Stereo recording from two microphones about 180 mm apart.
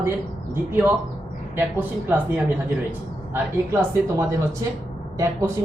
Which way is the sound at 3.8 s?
15° right (ahead or behind).